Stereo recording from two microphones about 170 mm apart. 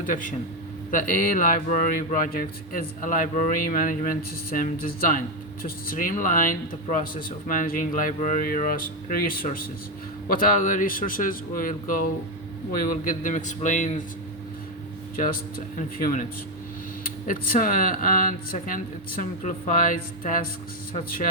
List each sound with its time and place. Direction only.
0.0 s a man's voice: 50° left (ahead or behind)
15.1 s a man's voice: 55° left (ahead or behind)